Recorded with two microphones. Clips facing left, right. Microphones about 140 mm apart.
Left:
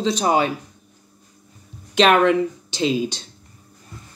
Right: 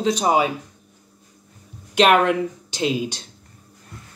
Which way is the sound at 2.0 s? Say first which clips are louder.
Left 1 dB; 5° right (ahead or behind).